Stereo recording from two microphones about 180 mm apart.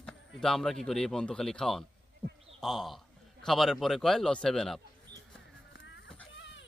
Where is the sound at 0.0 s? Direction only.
5° left (ahead or behind).